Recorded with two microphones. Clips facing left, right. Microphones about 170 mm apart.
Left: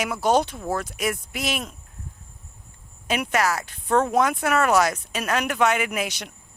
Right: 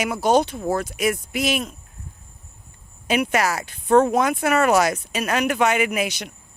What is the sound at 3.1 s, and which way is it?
Speech, 10° right (ahead or behind).